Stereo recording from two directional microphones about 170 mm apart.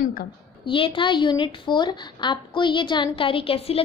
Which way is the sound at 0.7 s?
30° left (ahead or behind).